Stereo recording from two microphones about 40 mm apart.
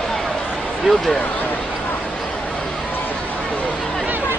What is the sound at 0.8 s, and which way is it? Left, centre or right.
Speech, centre.